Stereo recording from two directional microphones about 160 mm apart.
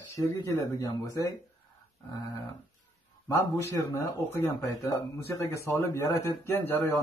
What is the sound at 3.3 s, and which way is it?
A man's voice, 20° left (ahead or behind).